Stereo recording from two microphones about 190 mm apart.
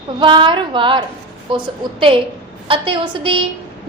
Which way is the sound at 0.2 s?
25° right (ahead or behind).